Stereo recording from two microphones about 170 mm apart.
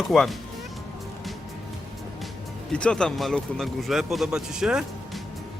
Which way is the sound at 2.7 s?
5° left (ahead or behind).